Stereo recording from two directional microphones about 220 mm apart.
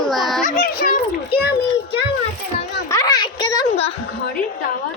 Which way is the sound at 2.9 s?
15° left (ahead or behind).